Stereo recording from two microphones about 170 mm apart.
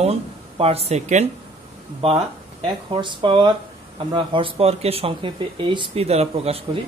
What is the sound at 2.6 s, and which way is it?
Speech, 30° right (ahead or behind).